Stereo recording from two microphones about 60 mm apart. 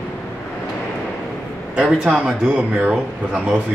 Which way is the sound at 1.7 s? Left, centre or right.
Centre.